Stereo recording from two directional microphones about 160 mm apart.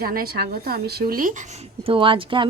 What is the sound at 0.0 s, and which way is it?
A woman's voice, 70° right (ahead or behind).